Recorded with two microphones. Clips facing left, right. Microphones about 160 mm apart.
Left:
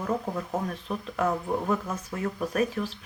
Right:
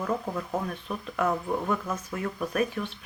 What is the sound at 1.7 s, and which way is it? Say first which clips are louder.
Speech: left 1 dB; 30° left (ahead or behind).